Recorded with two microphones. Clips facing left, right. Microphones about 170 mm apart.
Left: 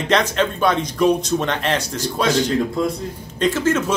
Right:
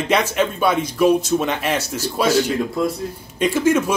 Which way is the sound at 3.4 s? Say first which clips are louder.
Right 2 dB; 10° right (ahead or behind).